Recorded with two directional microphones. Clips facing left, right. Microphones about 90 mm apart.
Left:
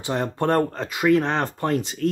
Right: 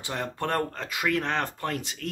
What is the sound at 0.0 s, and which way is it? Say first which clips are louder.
Speech: left 7 dB; 30° left (ahead or behind).